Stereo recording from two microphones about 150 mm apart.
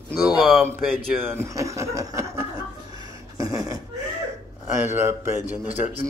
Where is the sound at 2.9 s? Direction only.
20° right (ahead or behind).